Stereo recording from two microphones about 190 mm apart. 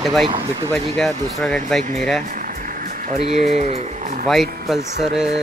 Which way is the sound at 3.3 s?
35° right (ahead or behind).